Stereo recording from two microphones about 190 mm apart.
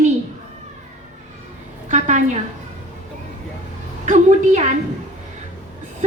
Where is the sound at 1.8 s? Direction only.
40° right (ahead or behind).